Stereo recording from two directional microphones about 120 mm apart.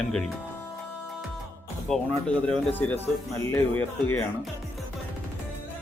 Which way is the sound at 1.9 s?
5° left (ahead or behind).